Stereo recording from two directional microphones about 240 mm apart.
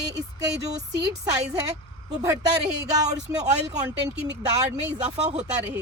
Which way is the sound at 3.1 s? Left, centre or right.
Centre.